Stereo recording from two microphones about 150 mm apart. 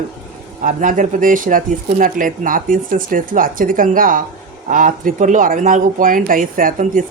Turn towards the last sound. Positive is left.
turn(degrees=-65)  # may be behind; listen again after turning